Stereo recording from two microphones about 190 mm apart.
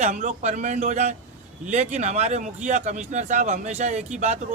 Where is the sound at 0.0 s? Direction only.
35° right (ahead or behind).